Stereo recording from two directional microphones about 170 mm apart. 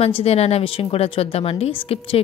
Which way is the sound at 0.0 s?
35° left (ahead or behind).